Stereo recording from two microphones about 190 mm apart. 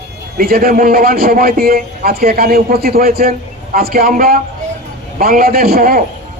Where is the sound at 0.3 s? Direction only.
50° right (ahead or behind).